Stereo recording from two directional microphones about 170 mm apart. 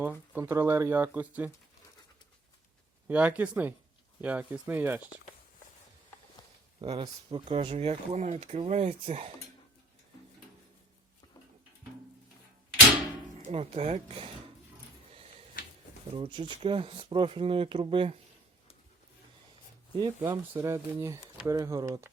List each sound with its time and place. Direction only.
0.0 s speech: 10° right (ahead or behind)
3.1 s speech: 10° right (ahead or behind)
6.9 s speech: 30° right (ahead or behind)
13.4 s speech: 40° right (ahead or behind)
15.1 s a sound: 35° right (ahead or behind)
16.1 s speech: 30° right (ahead or behind)
20.0 s speech: 25° right (ahead or behind)